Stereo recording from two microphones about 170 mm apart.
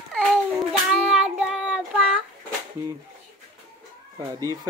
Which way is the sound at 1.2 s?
5° right (ahead or behind).